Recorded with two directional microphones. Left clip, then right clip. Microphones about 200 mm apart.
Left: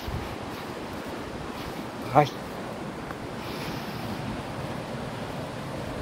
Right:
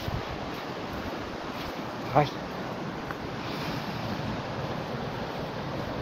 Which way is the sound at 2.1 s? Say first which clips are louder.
Left 3 dB; 40° left (ahead or behind).